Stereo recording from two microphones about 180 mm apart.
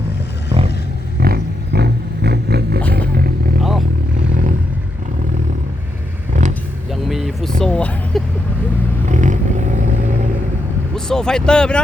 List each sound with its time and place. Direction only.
1.2 s a sound: 60° right (ahead or behind)
3.6 s vehicle: centre (ahead or behind)
4.3 s vehicle: 45° right (ahead or behind)
6.3 s vehicle: 40° right (ahead or behind)
6.9 s a sound: centre (ahead or behind)
9.0 s vehicle: 40° right (ahead or behind)
10.9 s speech: 5° left (ahead or behind)